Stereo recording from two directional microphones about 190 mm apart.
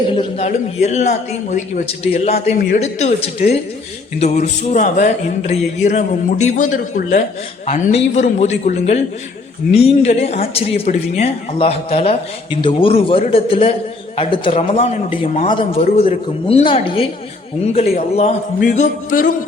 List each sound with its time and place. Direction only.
0.1 s speech: 30° left (ahead or behind)
2.6 s speech: 50° left (ahead or behind)
2.8 s a woman's voice: 35° left (ahead or behind)